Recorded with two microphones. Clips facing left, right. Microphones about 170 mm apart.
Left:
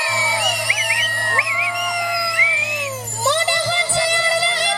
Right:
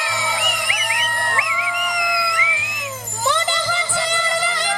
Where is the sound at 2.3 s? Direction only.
30° left (ahead or behind).